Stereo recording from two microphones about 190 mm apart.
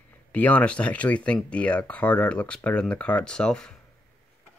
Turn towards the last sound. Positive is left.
turn(degrees=5)  # may be behind; listen again after turning